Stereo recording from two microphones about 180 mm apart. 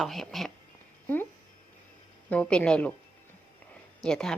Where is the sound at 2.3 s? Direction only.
5° left (ahead or behind).